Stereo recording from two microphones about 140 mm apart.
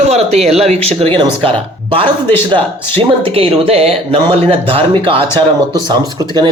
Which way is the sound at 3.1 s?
40° right (ahead or behind).